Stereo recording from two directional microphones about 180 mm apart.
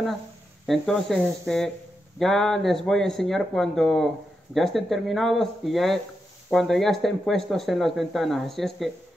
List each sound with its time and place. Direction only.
0.7 s speech: centre (ahead or behind)